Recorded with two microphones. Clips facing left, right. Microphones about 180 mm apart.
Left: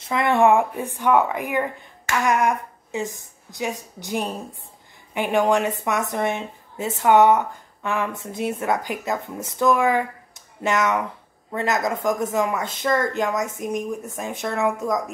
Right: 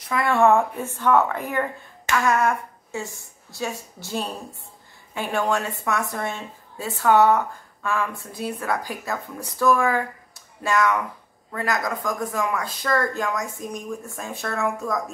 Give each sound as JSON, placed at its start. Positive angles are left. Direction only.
{"t": 0.0, "sound": "speech", "side_deg": 20}